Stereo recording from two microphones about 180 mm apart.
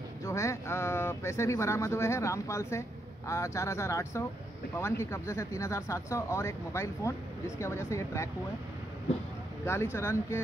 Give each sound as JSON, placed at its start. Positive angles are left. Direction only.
{"t": 0.2, "sound": "speech", "side_deg": 15}
{"t": 9.9, "sound": "speech", "side_deg": 15}